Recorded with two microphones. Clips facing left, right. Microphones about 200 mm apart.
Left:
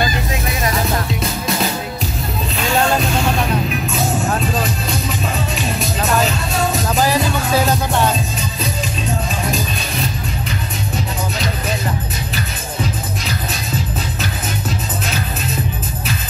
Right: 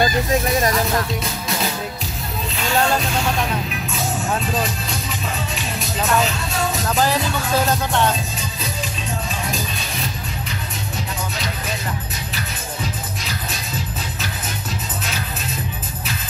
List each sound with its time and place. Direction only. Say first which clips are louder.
7.0 s music: left 2 dB; 10° left (ahead or behind)